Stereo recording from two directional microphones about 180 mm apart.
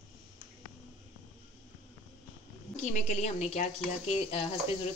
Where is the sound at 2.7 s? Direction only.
40° left (ahead or behind).